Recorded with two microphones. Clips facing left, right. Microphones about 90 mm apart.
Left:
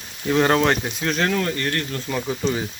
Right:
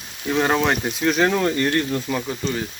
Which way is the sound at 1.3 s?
20° right (ahead or behind).